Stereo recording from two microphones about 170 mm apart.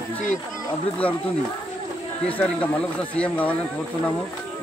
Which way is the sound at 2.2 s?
10° left (ahead or behind).